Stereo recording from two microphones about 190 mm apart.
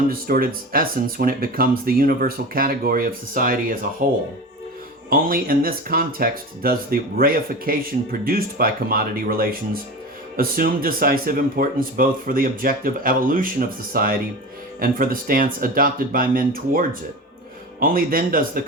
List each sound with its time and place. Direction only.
0.1 s speech: 50° right (ahead or behind)